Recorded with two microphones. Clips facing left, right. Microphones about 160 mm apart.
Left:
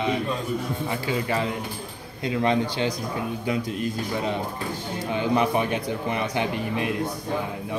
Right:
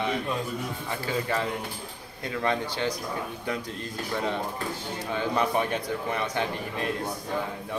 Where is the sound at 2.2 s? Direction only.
20° left (ahead or behind).